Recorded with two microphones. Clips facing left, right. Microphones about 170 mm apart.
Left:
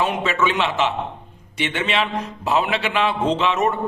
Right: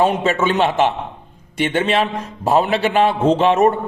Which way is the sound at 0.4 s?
45° right (ahead or behind).